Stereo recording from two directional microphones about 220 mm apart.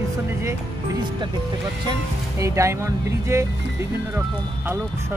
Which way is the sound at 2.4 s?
15° right (ahead or behind).